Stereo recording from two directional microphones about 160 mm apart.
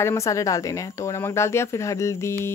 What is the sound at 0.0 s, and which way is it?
Speech, 20° left (ahead or behind).